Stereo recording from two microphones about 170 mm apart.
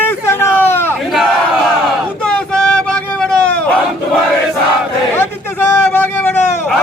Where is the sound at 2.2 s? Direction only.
5° left (ahead or behind).